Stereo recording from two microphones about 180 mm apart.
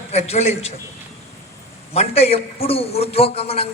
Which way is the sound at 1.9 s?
35° left (ahead or behind).